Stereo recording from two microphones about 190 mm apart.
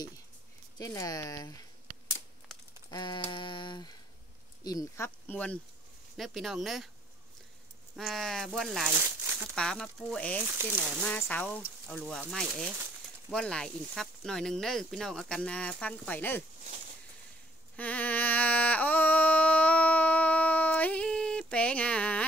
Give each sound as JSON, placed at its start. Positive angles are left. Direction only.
{"t": 0.7, "sound": "speech", "side_deg": 20}
{"t": 2.9, "sound": "a sound", "side_deg": 25}
{"t": 4.6, "sound": "speech", "side_deg": 15}
{"t": 7.9, "sound": "speech", "side_deg": 0}
{"t": 9.6, "sound": "speech", "side_deg": 0}
{"t": 10.4, "sound": "speech", "side_deg": -10}
{"t": 11.0, "sound": "speech", "side_deg": 10}
{"t": 17.7, "sound": "a sound", "side_deg": 10}